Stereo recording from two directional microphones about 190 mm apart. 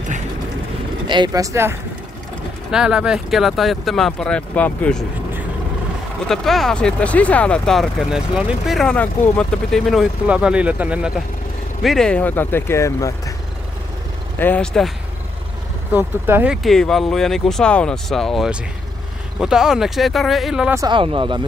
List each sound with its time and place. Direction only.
1.0 s speech: 25° right (ahead or behind)
2.7 s speech: 5° right (ahead or behind)
6.2 s speech: centre (ahead or behind)
14.4 s speech: 5° left (ahead or behind)
15.9 s speech: 10° right (ahead or behind)
20.7 s speech: 20° right (ahead or behind)